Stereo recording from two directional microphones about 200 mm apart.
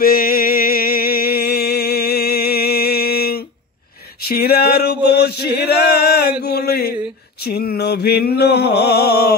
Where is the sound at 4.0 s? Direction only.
50° left (ahead or behind).